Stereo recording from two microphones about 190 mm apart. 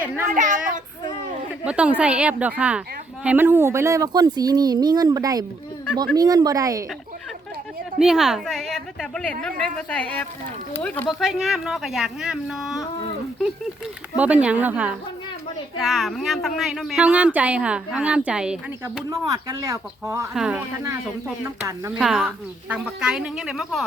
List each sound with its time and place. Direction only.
0.3 s a child's voice: 40° right (ahead or behind)
1.6 s a woman's voice: 5° right (ahead or behind)
7.9 s speech: 5° right (ahead or behind)
14.2 s a woman's voice: 5° right (ahead or behind)
19.1 s a woman's voice: 20° right (ahead or behind)
20.3 s a woman's voice: 5° right (ahead or behind)
22.0 s speech: centre (ahead or behind)